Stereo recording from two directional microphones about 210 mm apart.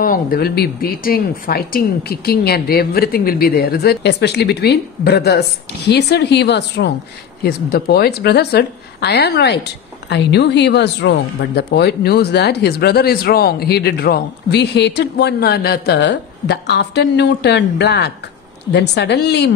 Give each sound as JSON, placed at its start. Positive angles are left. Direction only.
{"t": 0.0, "sound": "speech", "side_deg": 45}